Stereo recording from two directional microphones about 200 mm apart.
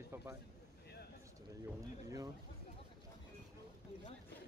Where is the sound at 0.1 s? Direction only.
10° right (ahead or behind).